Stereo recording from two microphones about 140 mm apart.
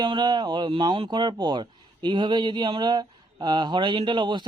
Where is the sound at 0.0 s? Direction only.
35° right (ahead or behind).